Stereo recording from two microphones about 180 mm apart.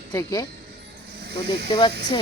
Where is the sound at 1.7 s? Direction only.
25° left (ahead or behind).